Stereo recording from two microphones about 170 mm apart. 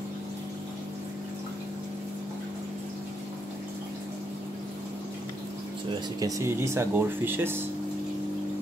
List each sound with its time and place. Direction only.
6.1 s speech: 20° right (ahead or behind)